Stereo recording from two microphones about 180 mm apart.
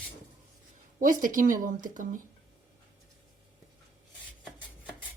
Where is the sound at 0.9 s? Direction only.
50° right (ahead or behind).